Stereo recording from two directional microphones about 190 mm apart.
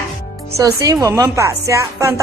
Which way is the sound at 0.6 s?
20° right (ahead or behind).